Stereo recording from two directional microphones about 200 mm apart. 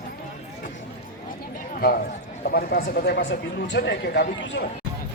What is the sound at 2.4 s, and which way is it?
Speech, 50° left (ahead or behind).